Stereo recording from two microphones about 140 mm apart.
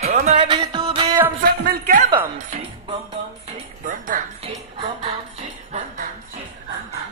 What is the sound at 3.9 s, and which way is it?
Music, 70° right (ahead or behind).